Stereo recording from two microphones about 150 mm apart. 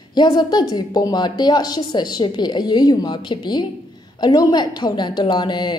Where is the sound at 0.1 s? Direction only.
30° left (ahead or behind).